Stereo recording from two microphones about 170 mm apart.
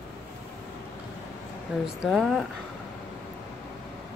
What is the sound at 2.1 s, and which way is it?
Speech, centre (ahead or behind).